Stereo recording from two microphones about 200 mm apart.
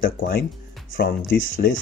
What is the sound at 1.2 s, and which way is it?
Speech, 80° left.